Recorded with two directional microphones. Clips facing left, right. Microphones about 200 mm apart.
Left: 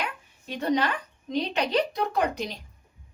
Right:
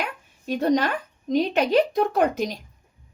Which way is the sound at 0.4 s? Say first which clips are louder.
Right 4 dB; 45° right (ahead or behind).